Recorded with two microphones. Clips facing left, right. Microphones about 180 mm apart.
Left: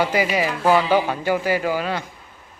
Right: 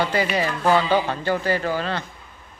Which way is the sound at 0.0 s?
10° left (ahead or behind).